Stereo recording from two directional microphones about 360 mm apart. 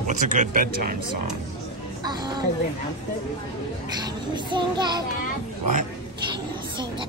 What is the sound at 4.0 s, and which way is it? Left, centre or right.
A child's voice, centre.